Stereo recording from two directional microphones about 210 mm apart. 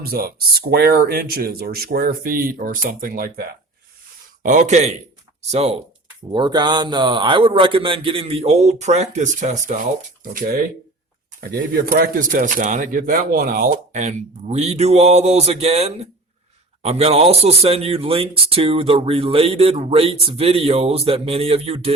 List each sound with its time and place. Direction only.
0.0 s speech: 45° right (ahead or behind); by 21.9 s 30° right (ahead or behind)